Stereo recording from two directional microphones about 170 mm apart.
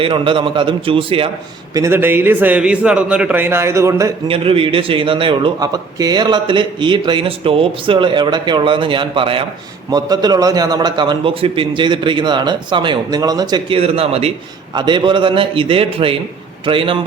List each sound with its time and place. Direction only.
0.0 s a man's voice: 30° right (ahead or behind)
1.7 s a man's voice: 15° right (ahead or behind)
4.3 s a man's voice: 35° right (ahead or behind)